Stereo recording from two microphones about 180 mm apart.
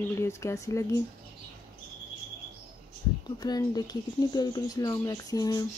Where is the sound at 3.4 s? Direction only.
20° left (ahead or behind).